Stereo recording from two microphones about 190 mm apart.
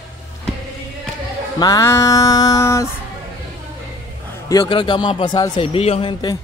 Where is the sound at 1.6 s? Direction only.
15° left (ahead or behind).